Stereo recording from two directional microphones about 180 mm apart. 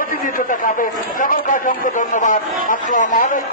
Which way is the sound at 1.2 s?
45° left (ahead or behind).